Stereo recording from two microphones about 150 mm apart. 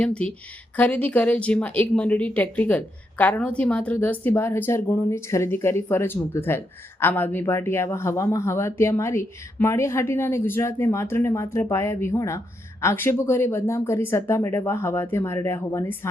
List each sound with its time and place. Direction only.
0.0 s speech: 5° left (ahead or behind)